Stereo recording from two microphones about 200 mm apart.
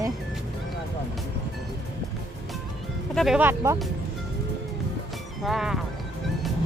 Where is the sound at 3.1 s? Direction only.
Centre (ahead or behind).